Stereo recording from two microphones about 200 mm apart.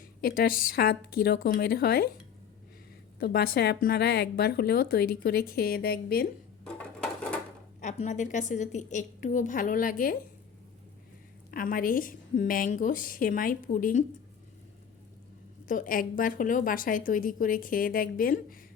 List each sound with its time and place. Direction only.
0.2 s a woman's voice: 45° left (ahead or behind)
3.2 s a woman's voice: 50° left (ahead or behind)
7.8 s a woman's voice: 35° left (ahead or behind)
11.5 s a woman's voice: 45° left (ahead or behind)
15.6 s a woman's voice: 40° left (ahead or behind)